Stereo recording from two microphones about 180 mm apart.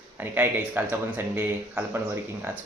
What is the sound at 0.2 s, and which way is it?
Speech, 10° right (ahead or behind).